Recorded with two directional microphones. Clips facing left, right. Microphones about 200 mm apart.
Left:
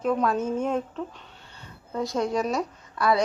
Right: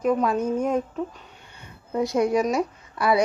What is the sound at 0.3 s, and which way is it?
Speech, 5° left (ahead or behind).